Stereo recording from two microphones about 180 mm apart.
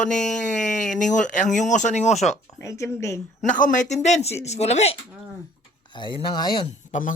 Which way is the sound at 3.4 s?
45° left (ahead or behind).